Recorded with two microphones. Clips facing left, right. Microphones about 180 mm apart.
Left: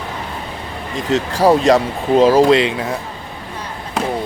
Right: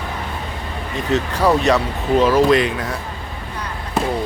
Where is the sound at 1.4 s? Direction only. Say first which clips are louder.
Left 5 dB; 35° left (ahead or behind).